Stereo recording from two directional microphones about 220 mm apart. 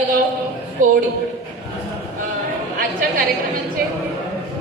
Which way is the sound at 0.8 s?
35° right (ahead or behind).